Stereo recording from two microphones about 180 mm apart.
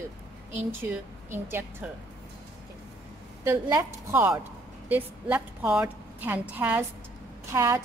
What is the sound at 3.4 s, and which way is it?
A woman's voice, 15° right (ahead or behind).